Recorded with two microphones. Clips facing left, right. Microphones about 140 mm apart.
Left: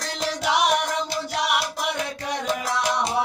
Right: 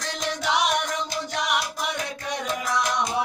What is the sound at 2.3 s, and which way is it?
Music, 30° left (ahead or behind).